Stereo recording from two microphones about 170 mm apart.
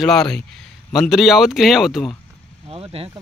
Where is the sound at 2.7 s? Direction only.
35° right (ahead or behind).